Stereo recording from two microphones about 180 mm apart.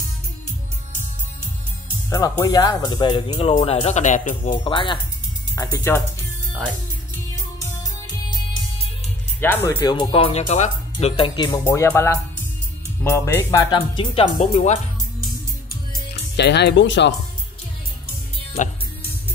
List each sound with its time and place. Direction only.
2.0 s speech: 20° left (ahead or behind); by 4.6 s 45° left (ahead or behind)
4.6 s speech: 25° left (ahead or behind)
5.6 s speech: 15° left (ahead or behind)
9.4 s speech: 15° left (ahead or behind)
11.6 s speech: 15° left (ahead or behind); by 14.8 s 40° left (ahead or behind)
16.3 s speech: 70° left (ahead or behind); by 17.1 s 90° left